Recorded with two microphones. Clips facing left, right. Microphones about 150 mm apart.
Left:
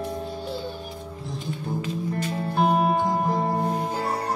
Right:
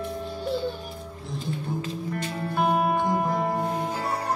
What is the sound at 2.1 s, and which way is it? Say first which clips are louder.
Music: left 1 dB; 30° left (ahead or behind).